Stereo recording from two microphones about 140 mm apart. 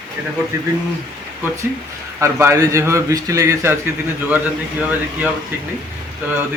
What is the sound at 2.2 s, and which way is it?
A man's voice, 20° right (ahead or behind).